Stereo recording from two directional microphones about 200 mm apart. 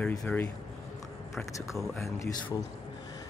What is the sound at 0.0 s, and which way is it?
Speech, 5° left (ahead or behind).